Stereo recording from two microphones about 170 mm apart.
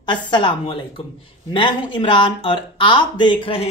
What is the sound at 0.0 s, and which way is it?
A woman's voice, 25° left (ahead or behind).